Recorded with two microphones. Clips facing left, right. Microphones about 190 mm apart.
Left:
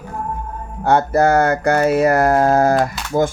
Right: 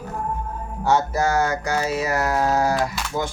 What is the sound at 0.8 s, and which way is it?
Speech, 55° left (ahead or behind).